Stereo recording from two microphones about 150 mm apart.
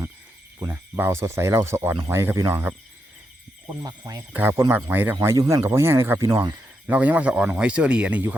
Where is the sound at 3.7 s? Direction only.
25° right (ahead or behind).